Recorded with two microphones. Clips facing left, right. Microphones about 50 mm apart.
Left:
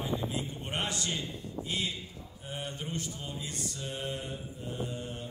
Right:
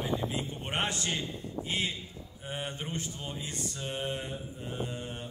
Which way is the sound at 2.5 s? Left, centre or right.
Right.